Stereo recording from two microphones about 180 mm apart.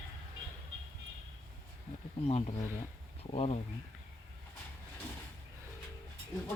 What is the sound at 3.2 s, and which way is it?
Speech, 35° left (ahead or behind).